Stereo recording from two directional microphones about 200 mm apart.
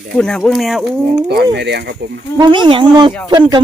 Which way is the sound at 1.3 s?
55° right (ahead or behind).